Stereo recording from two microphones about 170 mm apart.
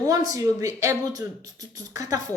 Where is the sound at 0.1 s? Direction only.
20° right (ahead or behind).